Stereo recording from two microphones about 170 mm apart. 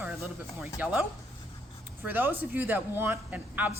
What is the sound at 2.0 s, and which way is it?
Speech, 10° right (ahead or behind).